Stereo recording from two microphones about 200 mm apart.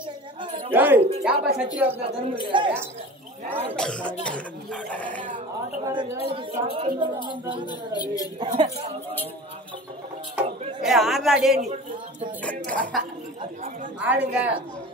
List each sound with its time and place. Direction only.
0.7 s speech: 10° right (ahead or behind)
2.4 s speech: 25° right (ahead or behind)
3.7 s speech: 5° left (ahead or behind)
5.9 s speech: 15° right (ahead or behind)
6.3 s speech: 25° right (ahead or behind)
7.6 s a woman's voice: 20° left (ahead or behind)
8.4 s speech: 25° right (ahead or behind)
10.3 s speech: centre (ahead or behind)
13.9 s speech: 5° right (ahead or behind)